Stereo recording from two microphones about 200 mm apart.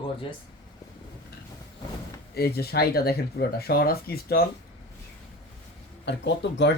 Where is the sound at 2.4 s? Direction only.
50° left (ahead or behind).